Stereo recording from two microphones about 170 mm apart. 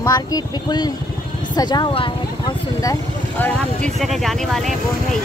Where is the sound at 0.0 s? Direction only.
25° left (ahead or behind); by 4.6 s centre (ahead or behind).